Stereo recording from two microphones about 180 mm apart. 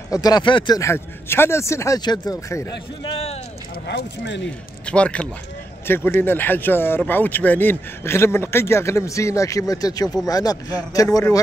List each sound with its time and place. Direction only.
0.1 s speech: 20° left (ahead or behind)
3.8 s speech: 70° left (ahead or behind)
4.8 s speech: 5° left (ahead or behind)